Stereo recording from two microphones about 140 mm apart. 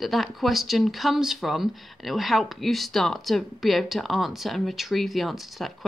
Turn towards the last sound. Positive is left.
turn(degrees=0)  # may be behind; listen again after turning